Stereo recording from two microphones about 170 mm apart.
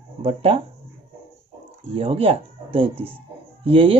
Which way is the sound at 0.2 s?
35° right (ahead or behind).